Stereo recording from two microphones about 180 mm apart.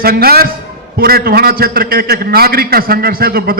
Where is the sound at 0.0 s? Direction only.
55° right (ahead or behind).